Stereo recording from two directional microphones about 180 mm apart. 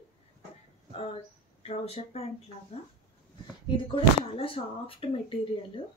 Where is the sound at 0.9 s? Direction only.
35° left (ahead or behind).